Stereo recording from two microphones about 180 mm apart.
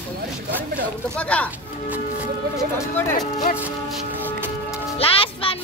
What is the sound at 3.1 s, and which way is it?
Speech, 45° left (ahead or behind).